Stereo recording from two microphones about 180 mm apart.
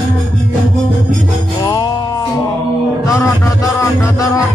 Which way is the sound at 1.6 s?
20° left (ahead or behind).